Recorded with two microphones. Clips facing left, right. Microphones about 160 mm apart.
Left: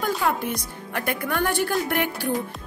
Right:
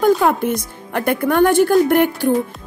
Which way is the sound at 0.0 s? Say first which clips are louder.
Right 10 dB; 50° right (ahead or behind).